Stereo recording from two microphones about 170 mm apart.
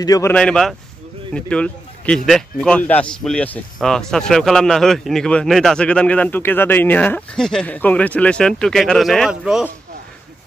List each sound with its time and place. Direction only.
0.0 s speech: 20° left (ahead or behind)
0.3 s speech: 5° left (ahead or behind)